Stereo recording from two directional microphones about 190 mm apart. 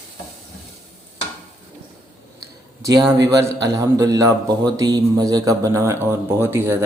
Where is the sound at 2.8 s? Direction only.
20° right (ahead or behind).